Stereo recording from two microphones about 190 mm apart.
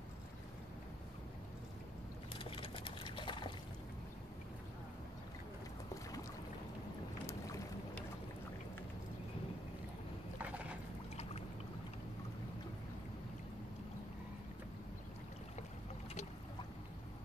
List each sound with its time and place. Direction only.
2.3 s a sound: 25° left (ahead or behind)
7.2 s boat: 15° left (ahead or behind)
10.4 s boat: 5° right (ahead or behind)